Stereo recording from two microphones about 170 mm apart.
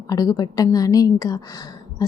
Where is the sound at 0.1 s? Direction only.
20° left (ahead or behind).